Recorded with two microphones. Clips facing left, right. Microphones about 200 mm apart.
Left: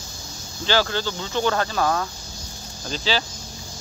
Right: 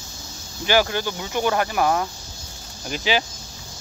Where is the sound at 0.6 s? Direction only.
15° right (ahead or behind).